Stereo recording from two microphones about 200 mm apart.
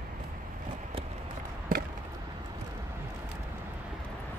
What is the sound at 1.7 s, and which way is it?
Chop, 45° right (ahead or behind).